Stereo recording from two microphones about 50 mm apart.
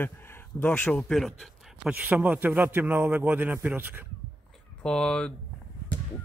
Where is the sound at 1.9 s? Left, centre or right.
Right.